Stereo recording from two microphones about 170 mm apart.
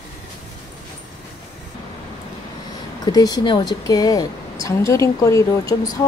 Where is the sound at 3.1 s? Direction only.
25° left (ahead or behind).